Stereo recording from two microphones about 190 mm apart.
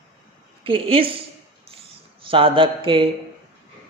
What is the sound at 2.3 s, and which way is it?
Speech, 30° right (ahead or behind).